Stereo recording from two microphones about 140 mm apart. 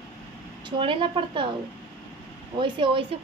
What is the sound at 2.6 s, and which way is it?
Speech, 40° right (ahead or behind).